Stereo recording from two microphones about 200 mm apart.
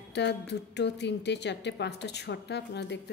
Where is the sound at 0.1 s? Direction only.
60° left (ahead or behind).